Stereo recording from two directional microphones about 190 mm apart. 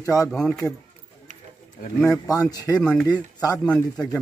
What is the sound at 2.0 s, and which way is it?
Speech, 20° left (ahead or behind).